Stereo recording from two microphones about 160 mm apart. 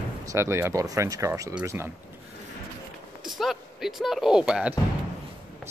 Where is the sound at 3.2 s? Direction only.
Centre (ahead or behind).